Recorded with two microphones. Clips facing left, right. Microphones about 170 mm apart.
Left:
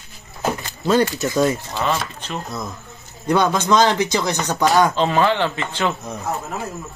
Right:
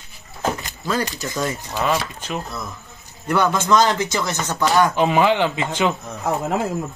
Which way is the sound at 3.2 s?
15° left (ahead or behind).